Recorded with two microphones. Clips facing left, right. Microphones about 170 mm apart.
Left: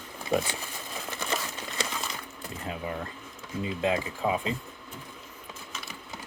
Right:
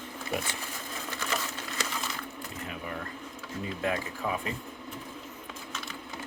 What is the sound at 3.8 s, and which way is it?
Speech, 20° left (ahead or behind).